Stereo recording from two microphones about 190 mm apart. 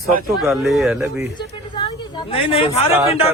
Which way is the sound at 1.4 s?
25° left (ahead or behind).